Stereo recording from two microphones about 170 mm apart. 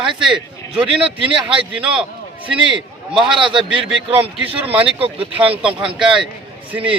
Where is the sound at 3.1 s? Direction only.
Centre (ahead or behind).